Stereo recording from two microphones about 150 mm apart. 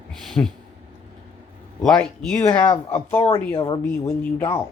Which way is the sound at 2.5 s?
40° left (ahead or behind).